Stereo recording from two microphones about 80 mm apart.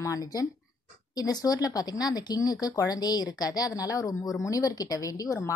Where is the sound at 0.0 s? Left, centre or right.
Left.